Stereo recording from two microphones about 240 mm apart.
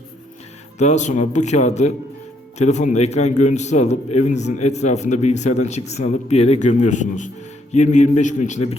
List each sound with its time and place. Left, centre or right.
0.8 s a man's voice: left